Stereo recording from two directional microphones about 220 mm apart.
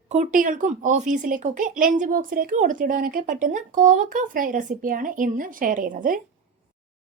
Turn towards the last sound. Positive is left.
turn(degrees=-40)  # may be behind; listen again after turning